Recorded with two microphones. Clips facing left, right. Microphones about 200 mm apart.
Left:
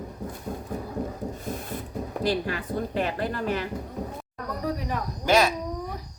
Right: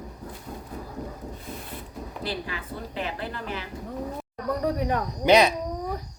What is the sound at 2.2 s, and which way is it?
Speech, 45° left (ahead or behind).